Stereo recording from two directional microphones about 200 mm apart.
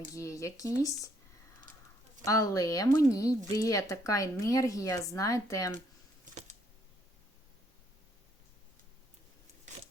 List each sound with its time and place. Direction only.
0.1 s speech: 15° left (ahead or behind)
2.2 s speech: 15° left (ahead or behind)